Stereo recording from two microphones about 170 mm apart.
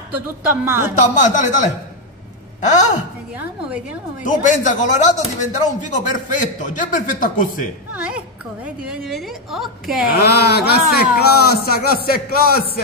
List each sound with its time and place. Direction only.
0.7 s speech: 15° right (ahead or behind)
0.9 s speech: 45° left (ahead or behind)
4.2 s speech: 50° left (ahead or behind)
7.9 s a sound: 5° right (ahead or behind)
8.6 s a woman's voice: 5° right (ahead or behind)
10.2 s speech: 75° left (ahead or behind)